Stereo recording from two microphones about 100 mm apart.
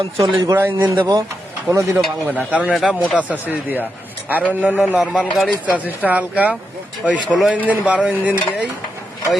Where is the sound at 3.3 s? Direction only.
15° right (ahead or behind).